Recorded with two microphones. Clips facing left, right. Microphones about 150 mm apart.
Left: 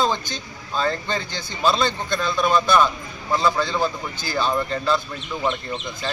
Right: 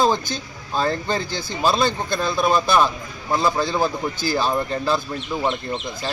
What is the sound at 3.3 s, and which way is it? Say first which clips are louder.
Speech: right 1 dB; 10° right (ahead or behind).